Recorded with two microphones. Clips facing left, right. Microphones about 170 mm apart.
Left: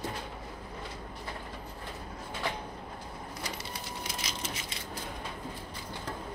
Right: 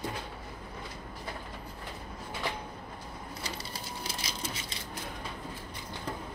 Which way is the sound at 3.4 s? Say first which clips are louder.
Even; 30° right (ahead or behind).